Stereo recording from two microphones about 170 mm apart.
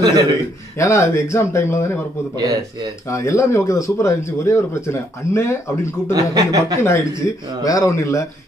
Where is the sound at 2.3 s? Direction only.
20° right (ahead or behind).